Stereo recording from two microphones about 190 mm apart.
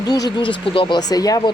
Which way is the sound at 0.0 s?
20° left (ahead or behind).